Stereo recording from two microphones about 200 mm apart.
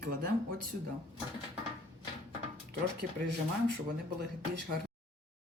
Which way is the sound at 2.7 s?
55° right (ahead or behind).